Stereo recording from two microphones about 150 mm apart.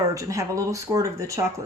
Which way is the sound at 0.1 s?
20° right (ahead or behind).